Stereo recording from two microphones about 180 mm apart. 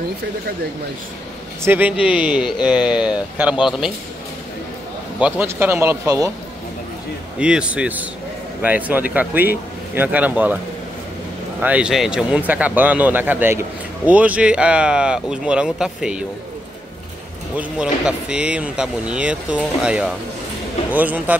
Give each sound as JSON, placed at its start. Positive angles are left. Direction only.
{"t": 1.6, "sound": "a man's voice", "side_deg": -10}
{"t": 5.2, "sound": "a man's voice", "side_deg": -10}
{"t": 7.3, "sound": "a man's voice", "side_deg": -5}
{"t": 11.6, "sound": "a man's voice", "side_deg": -5}
{"t": 17.6, "sound": "a man's voice", "side_deg": -5}